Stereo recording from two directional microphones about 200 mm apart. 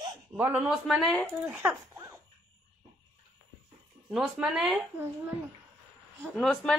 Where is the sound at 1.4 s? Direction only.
10° right (ahead or behind).